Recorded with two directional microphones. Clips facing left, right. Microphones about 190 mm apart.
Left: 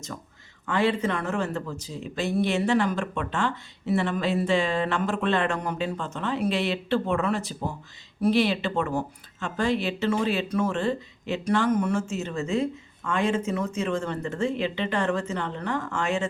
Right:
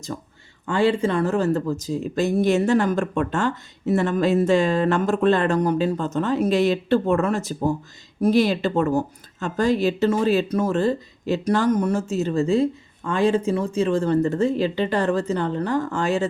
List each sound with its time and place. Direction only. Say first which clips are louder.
0.1 s speech: right 6 dB; 30° right (ahead or behind)